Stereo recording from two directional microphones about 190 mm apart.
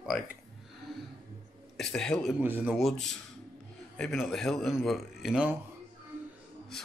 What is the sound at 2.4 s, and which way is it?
Speech, 10° right (ahead or behind).